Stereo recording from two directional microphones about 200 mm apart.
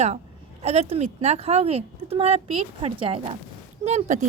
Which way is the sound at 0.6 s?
30° right (ahead or behind).